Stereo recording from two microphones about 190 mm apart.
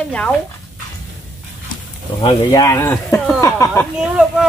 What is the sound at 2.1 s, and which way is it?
Speech, 20° left (ahead or behind).